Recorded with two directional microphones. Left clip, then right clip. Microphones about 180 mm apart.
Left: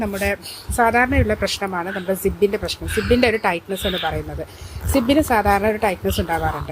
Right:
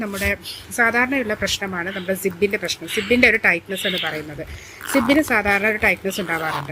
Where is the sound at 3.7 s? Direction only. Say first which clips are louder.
Even; 45° left (ahead or behind).